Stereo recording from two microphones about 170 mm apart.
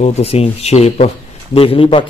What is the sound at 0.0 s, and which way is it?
A man's voice, 40° left (ahead or behind).